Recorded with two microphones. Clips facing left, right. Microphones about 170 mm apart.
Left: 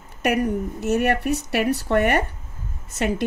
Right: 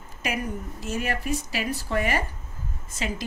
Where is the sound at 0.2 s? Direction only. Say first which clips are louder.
Left 9 dB; 65° left (ahead or behind).